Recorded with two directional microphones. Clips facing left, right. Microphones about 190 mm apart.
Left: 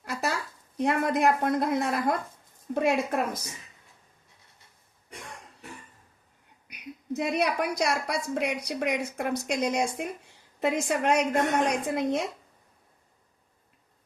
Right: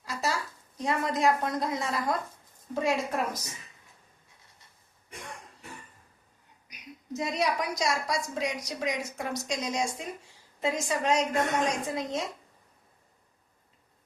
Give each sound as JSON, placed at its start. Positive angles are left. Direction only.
{"t": 0.0, "sound": "a sound", "side_deg": 60}
{"t": 0.8, "sound": "a woman's voice", "side_deg": 60}
{"t": 6.7, "sound": "a woman's voice", "side_deg": 60}